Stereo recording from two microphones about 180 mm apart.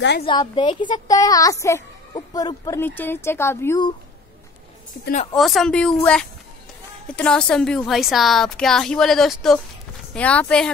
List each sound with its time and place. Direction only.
0.2 s speech: 25° left (ahead or behind)
5.3 s a woman's voice: centre (ahead or behind)